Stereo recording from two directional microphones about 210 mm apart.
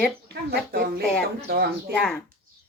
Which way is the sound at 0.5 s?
45° right (ahead or behind).